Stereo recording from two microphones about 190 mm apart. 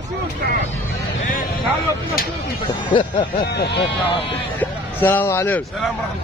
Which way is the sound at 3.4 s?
60° left (ahead or behind).